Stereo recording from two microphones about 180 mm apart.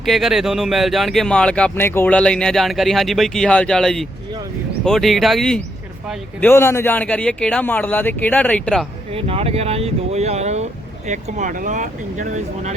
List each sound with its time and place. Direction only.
0.0 s speech: centre (ahead or behind)
6.4 s speech: 15° left (ahead or behind)
9.1 s speech: 35° right (ahead or behind)